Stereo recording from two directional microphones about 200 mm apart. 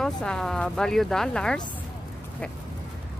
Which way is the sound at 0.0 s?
5° left (ahead or behind).